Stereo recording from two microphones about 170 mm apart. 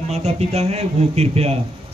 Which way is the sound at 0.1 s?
40° right (ahead or behind).